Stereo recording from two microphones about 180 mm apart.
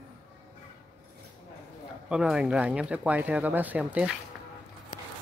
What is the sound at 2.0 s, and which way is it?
Speech, 5° right (ahead or behind).